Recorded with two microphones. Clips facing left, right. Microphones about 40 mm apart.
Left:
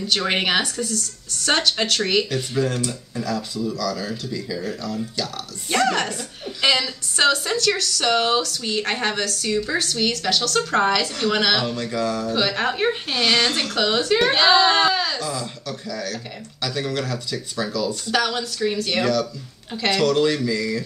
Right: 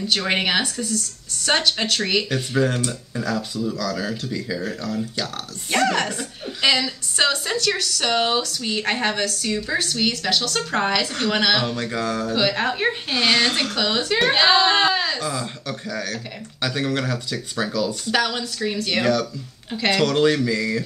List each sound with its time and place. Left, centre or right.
0.1 s speech: centre
2.2 s speech: right
5.9 s a woman's voice: centre
7.5 s a woman's voice: centre
11.6 s speech: right
12.4 s speech: centre
13.2 s speech: centre
13.7 s a woman's voice: centre
15.0 s a sound: right
15.9 s speech: right
16.6 s speech: right
18.1 s a woman's voice: centre
19.7 s a woman's voice: centre
20.1 s speech: right